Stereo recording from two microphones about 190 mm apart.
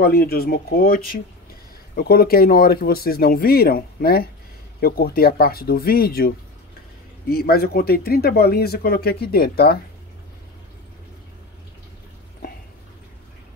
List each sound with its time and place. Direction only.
0.0 s speech: 55° left (ahead or behind)